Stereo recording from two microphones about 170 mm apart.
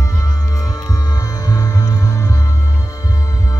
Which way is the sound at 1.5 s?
20° left (ahead or behind).